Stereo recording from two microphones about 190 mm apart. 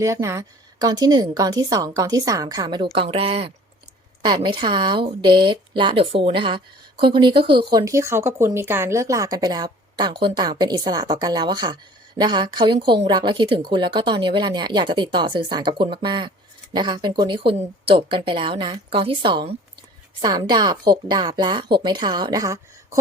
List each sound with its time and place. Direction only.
0.0 s a woman's voice: 15° right (ahead or behind)